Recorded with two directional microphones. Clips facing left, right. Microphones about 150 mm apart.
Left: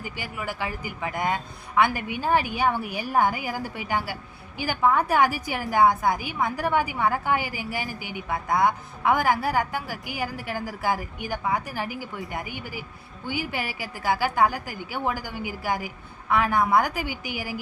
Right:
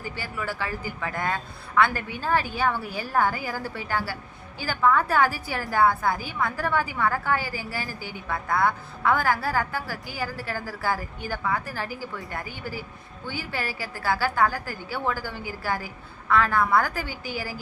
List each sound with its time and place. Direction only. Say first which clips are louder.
0.0 s a woman's voice: right 1 dB; 15° left (ahead or behind)